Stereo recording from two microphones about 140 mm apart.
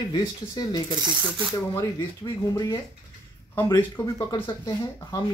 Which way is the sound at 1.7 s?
25° left (ahead or behind).